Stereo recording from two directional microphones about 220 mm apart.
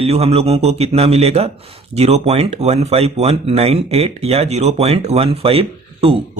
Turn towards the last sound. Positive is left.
turn(degrees=-25)  # may be behind; listen again after turning